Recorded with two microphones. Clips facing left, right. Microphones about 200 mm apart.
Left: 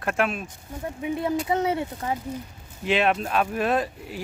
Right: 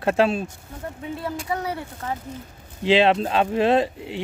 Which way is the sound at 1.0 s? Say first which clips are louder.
Left 5 dB; 20° left (ahead or behind).